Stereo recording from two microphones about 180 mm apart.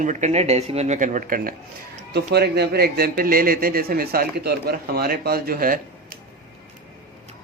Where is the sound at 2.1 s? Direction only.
65° right (ahead or behind).